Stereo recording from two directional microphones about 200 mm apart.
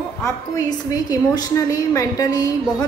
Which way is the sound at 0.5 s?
20° left (ahead or behind).